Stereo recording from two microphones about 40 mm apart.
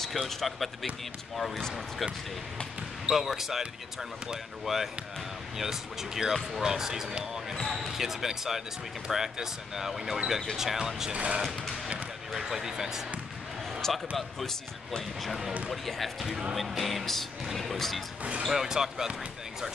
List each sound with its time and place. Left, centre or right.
0.0 s music: centre
3.1 s speech: centre
4.7 s speech: centre
11.1 s speech: right
12.3 s speech: centre
13.8 s speech: centre
15.7 s music: centre
18.5 s speech: centre